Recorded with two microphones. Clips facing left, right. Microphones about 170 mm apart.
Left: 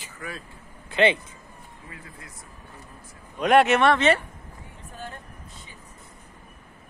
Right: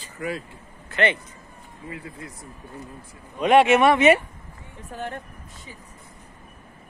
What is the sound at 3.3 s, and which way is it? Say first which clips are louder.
Speech: right 2 dB; centre (ahead or behind).